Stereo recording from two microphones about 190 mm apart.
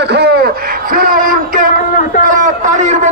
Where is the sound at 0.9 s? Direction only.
50° right (ahead or behind).